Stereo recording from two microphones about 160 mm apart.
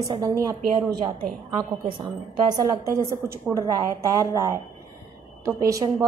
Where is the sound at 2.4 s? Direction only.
20° right (ahead or behind).